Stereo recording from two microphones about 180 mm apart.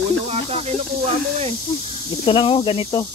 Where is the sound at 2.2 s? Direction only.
30° left (ahead or behind).